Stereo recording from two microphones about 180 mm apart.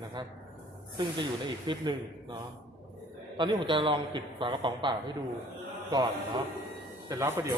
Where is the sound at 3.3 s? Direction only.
25° right (ahead or behind).